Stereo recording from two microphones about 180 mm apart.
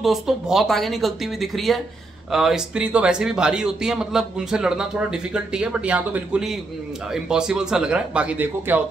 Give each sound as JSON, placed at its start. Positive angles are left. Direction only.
{"t": 0.0, "sound": "speech", "side_deg": 0}